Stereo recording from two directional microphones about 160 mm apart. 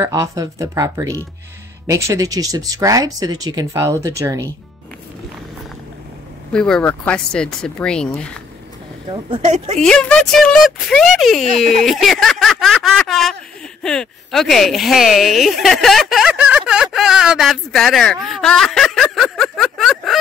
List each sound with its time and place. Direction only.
0.0 s speech: 20° right (ahead or behind)
6.5 s speech: 5° left (ahead or behind)
9.4 s speech: 45° right (ahead or behind)
9.8 s speech: 5° left (ahead or behind)